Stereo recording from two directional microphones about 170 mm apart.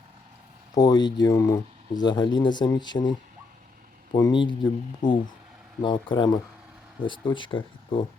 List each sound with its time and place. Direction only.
0.7 s speech: 20° left (ahead or behind)